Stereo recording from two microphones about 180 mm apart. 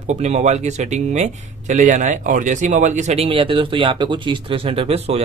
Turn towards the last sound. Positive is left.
turn(degrees=-35)  # may be behind; listen again after turning